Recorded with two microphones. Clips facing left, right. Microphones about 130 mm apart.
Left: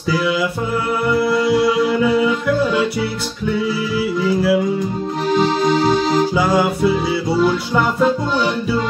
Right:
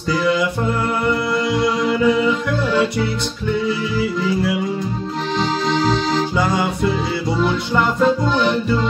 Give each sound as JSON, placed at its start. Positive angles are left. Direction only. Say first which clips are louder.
{"t": 1.0, "sound": "music", "louder": "left 5 dB", "side_deg": 5}
{"t": 4.2, "sound": "music", "louder": "left 7 dB", "side_deg": 5}